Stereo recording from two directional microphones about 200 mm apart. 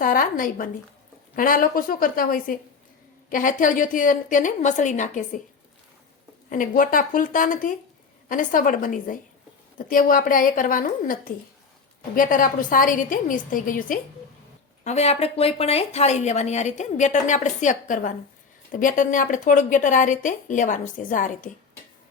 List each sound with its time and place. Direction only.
0.0 s a woman's voice: 45° left (ahead or behind)
6.5 s a woman's voice: 40° left (ahead or behind)
14.8 s a woman's voice: 35° left (ahead or behind)